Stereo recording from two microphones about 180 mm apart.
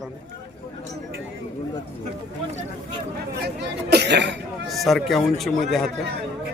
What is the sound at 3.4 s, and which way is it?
Speech, 65° right (ahead or behind).